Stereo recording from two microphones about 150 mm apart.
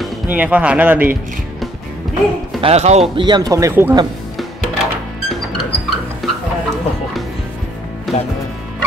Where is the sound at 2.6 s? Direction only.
45° right (ahead or behind).